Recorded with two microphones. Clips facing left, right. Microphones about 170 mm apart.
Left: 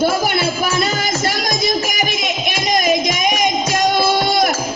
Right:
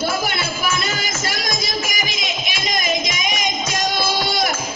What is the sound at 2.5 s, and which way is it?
Music, 50° left (ahead or behind).